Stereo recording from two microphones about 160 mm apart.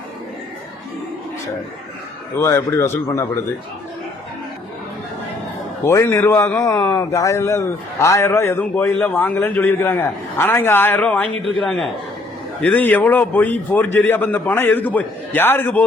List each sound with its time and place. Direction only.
2.4 s a man's voice: 15° left (ahead or behind)
5.8 s a man's voice: 15° left (ahead or behind)